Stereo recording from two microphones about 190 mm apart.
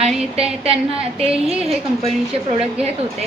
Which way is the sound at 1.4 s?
5° right (ahead or behind).